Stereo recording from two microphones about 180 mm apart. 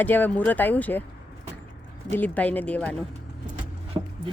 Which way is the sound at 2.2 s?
10° left (ahead or behind).